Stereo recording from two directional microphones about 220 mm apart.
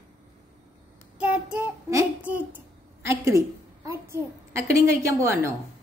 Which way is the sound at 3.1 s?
15° right (ahead or behind).